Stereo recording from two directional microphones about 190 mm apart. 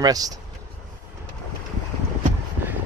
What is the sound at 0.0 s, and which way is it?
Speech, 20° right (ahead or behind).